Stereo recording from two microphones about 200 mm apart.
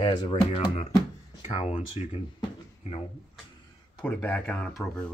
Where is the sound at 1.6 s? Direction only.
30° left (ahead or behind).